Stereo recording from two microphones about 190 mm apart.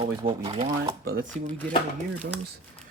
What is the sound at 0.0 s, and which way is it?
Speech, 25° right (ahead or behind).